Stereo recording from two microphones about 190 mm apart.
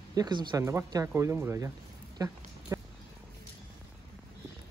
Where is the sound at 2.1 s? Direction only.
20° right (ahead or behind).